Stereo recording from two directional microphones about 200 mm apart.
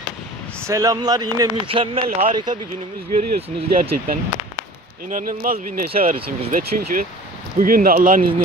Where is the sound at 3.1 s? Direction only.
30° right (ahead or behind).